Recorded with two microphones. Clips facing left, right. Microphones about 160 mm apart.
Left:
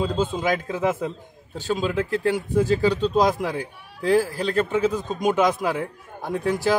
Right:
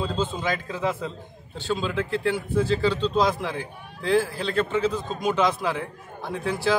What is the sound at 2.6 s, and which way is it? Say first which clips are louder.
A man's voice: left 3 dB; 45° left (ahead or behind).